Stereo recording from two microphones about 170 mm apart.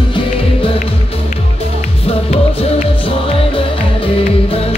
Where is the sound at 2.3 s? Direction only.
35° left (ahead or behind).